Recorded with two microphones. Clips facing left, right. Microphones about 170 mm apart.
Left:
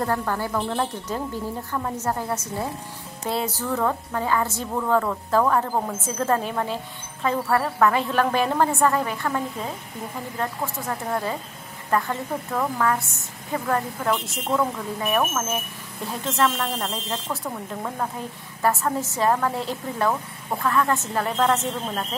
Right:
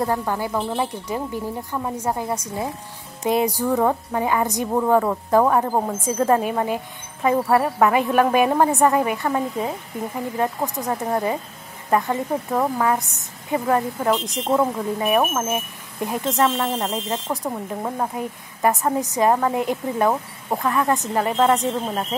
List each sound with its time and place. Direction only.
0.0 s a woman's voice: 15° right (ahead or behind)